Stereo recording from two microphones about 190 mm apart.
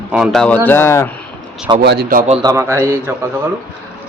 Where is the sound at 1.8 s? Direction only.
60° right (ahead or behind).